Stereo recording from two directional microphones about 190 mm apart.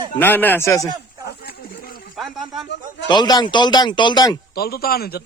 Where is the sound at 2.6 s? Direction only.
65° left (ahead or behind).